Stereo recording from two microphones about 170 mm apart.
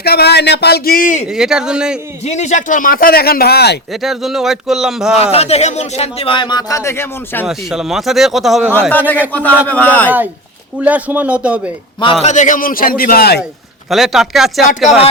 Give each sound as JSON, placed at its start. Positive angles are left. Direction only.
{"t": 0.0, "sound": "speech", "side_deg": 70}
{"t": 1.3, "sound": "speech", "side_deg": -5}
{"t": 2.2, "sound": "speech", "side_deg": 40}
{"t": 4.0, "sound": "speech", "side_deg": 0}
{"t": 5.1, "sound": "speech", "side_deg": 35}
{"t": 7.4, "sound": "speech", "side_deg": -5}
{"t": 8.9, "sound": "a man's voice", "side_deg": 10}
{"t": 10.8, "sound": "a man's voice", "side_deg": -10}
{"t": 12.2, "sound": "speech", "side_deg": 45}
{"t": 13.9, "sound": "speech", "side_deg": 0}